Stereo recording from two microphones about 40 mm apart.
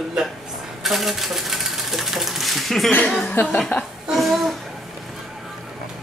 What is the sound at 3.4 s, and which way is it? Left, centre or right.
Speech, left.